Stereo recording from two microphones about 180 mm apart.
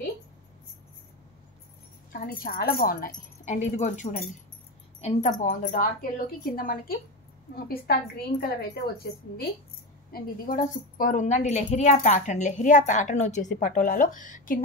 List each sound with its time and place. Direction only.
2.1 s a woman's voice: 50° left (ahead or behind)